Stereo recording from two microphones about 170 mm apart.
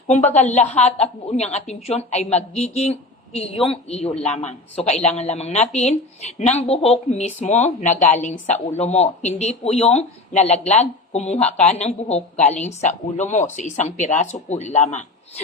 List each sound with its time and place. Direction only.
0.1 s a woman's voice: 45° left (ahead or behind)